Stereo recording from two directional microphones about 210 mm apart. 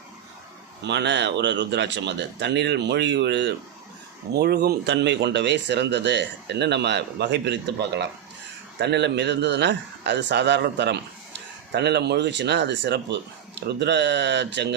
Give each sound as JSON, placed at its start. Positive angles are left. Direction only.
{"t": 0.9, "sound": "speech", "side_deg": -55}